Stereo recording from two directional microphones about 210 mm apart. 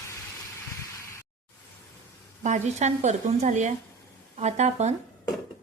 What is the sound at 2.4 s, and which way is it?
A woman's voice, 35° right (ahead or behind).